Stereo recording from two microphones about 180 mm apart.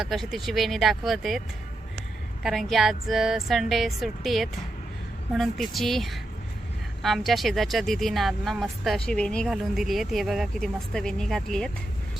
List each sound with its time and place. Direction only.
0.0 s speech: centre (ahead or behind)
2.4 s speech: centre (ahead or behind)